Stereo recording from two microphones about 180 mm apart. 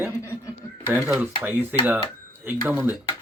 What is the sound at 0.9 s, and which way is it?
Speech, 10° right (ahead or behind).